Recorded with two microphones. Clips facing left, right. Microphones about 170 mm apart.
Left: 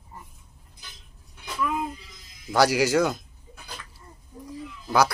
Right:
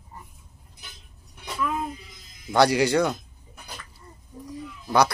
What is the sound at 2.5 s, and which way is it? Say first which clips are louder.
Speech: right 1 dB; 5° left (ahead or behind).